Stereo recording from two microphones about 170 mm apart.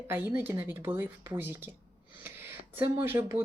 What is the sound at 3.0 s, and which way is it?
Speech, 15° right (ahead or behind).